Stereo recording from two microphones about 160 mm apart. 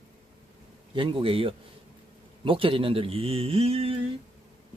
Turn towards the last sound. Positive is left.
turn(degrees=-40)  # may be behind; listen again after turning